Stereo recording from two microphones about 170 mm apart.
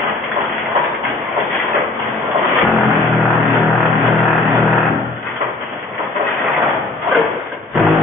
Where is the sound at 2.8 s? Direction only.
Centre (ahead or behind).